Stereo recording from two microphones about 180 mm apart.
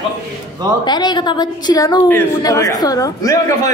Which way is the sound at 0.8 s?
25° left (ahead or behind).